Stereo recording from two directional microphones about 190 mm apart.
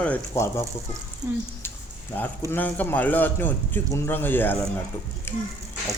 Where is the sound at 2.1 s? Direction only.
10° left (ahead or behind).